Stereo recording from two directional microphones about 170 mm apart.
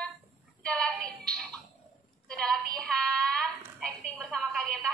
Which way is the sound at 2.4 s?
5° left (ahead or behind).